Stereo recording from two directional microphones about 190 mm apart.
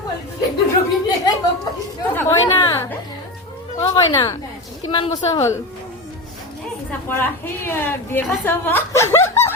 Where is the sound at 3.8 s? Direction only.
15° left (ahead or behind).